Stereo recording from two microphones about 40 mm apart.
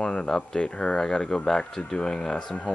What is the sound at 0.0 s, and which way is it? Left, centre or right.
Speech, centre.